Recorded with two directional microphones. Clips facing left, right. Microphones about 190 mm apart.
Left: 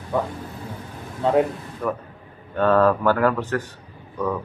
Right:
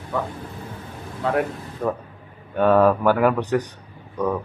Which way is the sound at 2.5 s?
15° right (ahead or behind).